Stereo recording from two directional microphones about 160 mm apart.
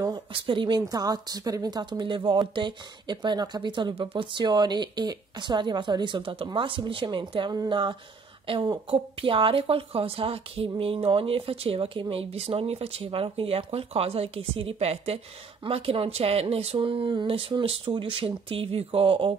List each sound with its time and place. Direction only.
0.0 s a woman's voice: 30° right (ahead or behind)